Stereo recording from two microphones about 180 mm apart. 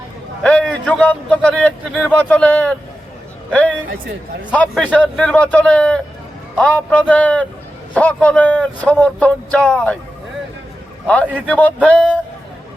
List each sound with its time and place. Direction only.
0.4 s a man's voice: 5° left (ahead or behind)
11.0 s a man's voice: 10° left (ahead or behind)